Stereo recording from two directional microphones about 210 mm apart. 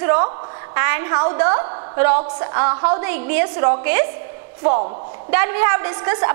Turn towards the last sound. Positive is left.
turn(degrees=-20)  # may be behind; listen again after turning